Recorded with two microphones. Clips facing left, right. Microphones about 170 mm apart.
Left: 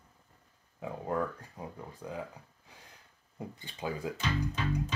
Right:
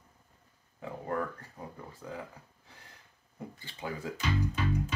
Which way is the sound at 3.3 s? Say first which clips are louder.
Left 1 dB; 20° left (ahead or behind).